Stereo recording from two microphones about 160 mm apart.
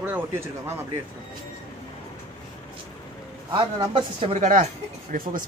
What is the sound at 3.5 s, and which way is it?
Speech, 30° right (ahead or behind).